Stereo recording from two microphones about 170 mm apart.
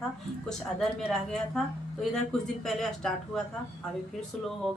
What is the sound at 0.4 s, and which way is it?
A woman's voice, 5° left (ahead or behind).